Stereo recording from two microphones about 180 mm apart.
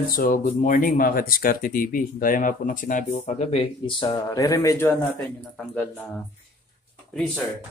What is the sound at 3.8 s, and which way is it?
Speech, 30° left (ahead or behind).